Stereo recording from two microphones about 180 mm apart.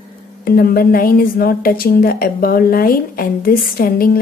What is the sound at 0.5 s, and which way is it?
A woman's voice, 55° left (ahead or behind).